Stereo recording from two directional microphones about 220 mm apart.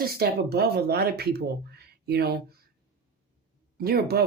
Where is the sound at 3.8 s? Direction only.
45° right (ahead or behind).